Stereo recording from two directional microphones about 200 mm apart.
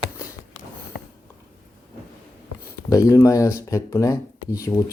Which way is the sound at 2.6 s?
15° left (ahead or behind).